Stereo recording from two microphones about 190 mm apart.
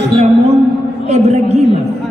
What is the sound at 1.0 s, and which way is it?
Speech, 35° right (ahead or behind).